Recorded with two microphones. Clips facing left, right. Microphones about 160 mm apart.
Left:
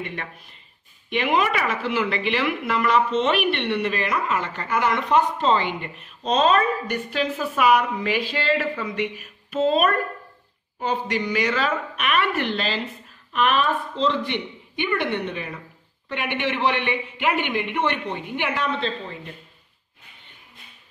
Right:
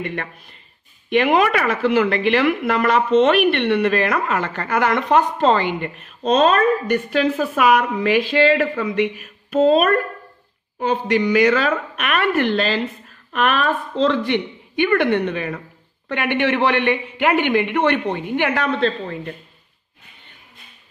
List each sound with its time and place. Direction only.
0.0 s a woman's voice: 45° right (ahead or behind)
10.8 s a woman's voice: 55° right (ahead or behind)
14.8 s a man's voice: 65° right (ahead or behind)
18.7 s a woman's voice: 50° right (ahead or behind)